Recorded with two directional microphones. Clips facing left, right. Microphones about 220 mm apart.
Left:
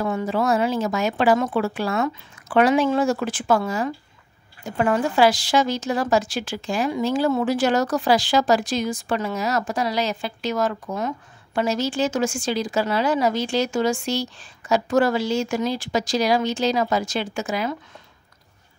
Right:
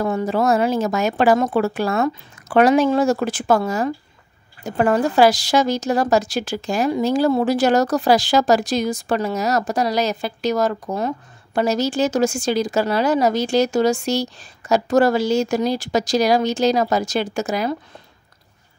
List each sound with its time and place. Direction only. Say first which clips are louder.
0.0 s speech: right 3 dB; 40° right (ahead or behind)